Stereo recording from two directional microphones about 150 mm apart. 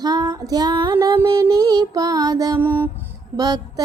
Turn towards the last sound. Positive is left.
turn(degrees=-25)  # may be behind; listen again after turning